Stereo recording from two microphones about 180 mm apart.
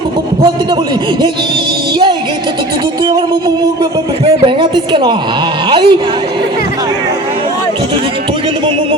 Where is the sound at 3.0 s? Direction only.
25° right (ahead or behind).